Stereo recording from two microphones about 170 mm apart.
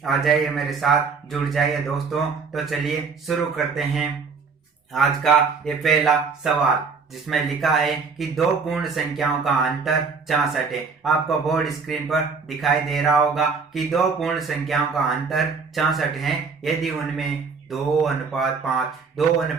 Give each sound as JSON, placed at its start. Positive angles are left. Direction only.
{"t": 0.0, "sound": "speech", "side_deg": 0}